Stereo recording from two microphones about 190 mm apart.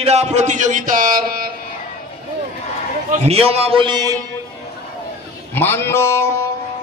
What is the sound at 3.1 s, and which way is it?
A man's voice, 35° right (ahead or behind).